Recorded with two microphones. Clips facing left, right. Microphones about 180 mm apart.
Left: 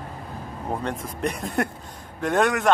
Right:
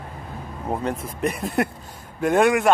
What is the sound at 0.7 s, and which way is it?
Speech, 5° right (ahead or behind).